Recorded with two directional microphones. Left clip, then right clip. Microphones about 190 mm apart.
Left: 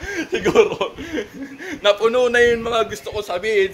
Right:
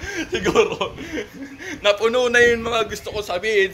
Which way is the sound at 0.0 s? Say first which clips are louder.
Left 2 dB; 25° left (ahead or behind).